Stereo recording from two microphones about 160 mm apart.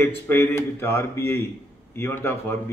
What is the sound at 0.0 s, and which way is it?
A man's voice, 15° left (ahead or behind).